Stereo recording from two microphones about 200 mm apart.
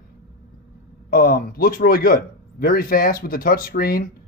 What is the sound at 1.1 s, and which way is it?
A man's voice, 50° left (ahead or behind).